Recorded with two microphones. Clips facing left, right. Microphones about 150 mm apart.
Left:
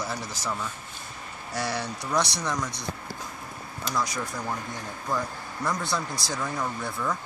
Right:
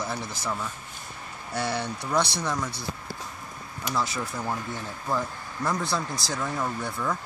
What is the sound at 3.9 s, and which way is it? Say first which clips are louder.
Speech: right 1 dB; 5° right (ahead or behind).